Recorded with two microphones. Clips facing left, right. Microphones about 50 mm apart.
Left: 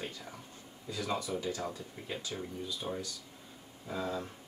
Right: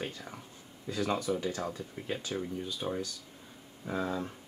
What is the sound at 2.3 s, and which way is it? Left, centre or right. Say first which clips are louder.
Speech: right 4 dB; centre.